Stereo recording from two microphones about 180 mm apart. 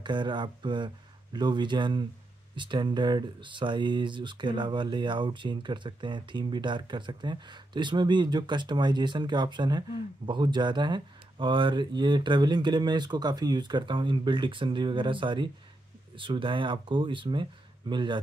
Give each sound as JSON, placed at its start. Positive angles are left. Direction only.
{"t": 0.0, "sound": "speech", "side_deg": -25}